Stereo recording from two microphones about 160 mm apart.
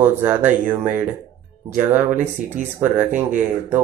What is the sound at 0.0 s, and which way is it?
Speech, 15° right (ahead or behind).